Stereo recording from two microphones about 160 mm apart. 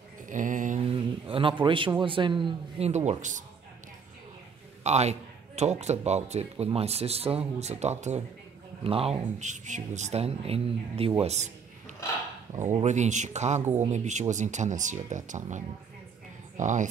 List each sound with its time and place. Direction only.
0.3 s mantra: 55° right (ahead or behind)
0.8 s a sound: 35° right (ahead or behind)
2.0 s speech: 30° right (ahead or behind)
3.1 s speech: 50° right (ahead or behind)
4.8 s a man's voice: 45° right (ahead or behind)
12.8 s speech: 45° right (ahead or behind)